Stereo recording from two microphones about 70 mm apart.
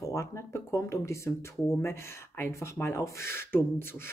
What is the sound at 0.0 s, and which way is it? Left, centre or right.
Speech, left.